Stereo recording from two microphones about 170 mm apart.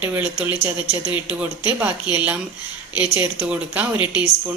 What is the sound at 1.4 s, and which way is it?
Speech, 10° right (ahead or behind).